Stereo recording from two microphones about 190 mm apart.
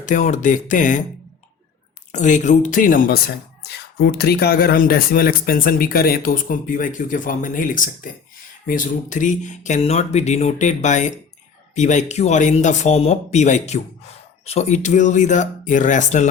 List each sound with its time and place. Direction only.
0.0 s speech: 40° left (ahead or behind)
2.1 s speech: 40° left (ahead or behind)